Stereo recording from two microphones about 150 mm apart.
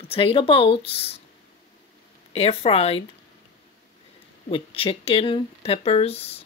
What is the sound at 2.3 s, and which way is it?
Speech, 40° left (ahead or behind).